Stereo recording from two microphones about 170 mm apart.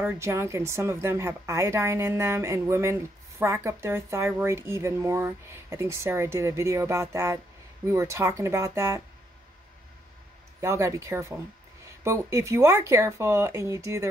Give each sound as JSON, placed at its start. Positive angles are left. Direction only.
{"t": 0.0, "sound": "speech", "side_deg": -15}
{"t": 10.6, "sound": "speech", "side_deg": -15}